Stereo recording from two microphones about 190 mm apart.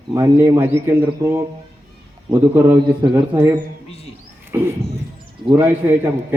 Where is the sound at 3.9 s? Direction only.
30° left (ahead or behind).